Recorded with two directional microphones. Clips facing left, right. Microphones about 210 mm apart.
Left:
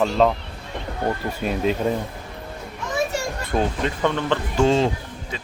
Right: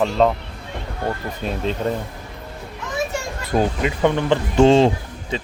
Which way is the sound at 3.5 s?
10° right (ahead or behind).